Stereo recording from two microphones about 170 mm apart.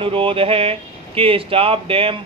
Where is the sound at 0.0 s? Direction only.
30° right (ahead or behind).